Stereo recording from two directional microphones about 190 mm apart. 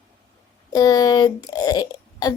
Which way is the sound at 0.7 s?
20° left (ahead or behind).